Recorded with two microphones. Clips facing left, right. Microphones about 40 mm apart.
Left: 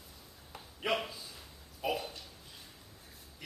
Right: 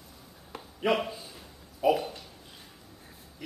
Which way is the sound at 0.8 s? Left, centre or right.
Centre.